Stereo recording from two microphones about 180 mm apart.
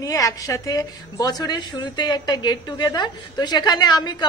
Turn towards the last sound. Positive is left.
turn(degrees=25)  # may be behind; listen again after turning